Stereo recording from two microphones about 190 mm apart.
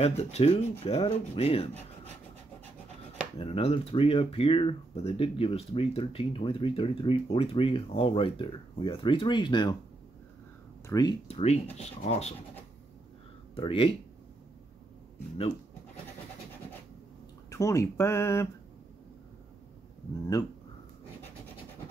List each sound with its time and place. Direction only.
0.0 s speech: 35° left (ahead or behind)
3.3 s speech: 30° left (ahead or behind)
10.9 s speech: 20° left (ahead or behind)
13.6 s speech: 30° left (ahead or behind)
17.5 s speech: 15° left (ahead or behind)